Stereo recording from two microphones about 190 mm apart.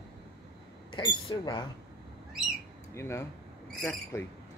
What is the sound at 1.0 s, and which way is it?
Speech, 25° left (ahead or behind).